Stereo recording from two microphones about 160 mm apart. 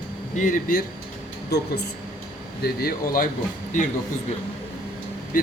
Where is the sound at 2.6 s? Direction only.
70° left (ahead or behind).